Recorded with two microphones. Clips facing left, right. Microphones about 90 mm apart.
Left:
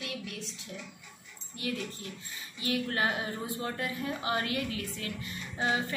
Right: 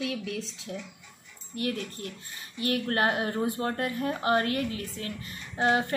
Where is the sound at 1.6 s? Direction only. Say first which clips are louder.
Right 4 dB; 55° right (ahead or behind); by 5.3 s 35° right (ahead or behind).